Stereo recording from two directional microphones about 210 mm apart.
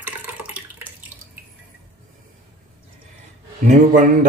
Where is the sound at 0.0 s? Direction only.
10° right (ahead or behind).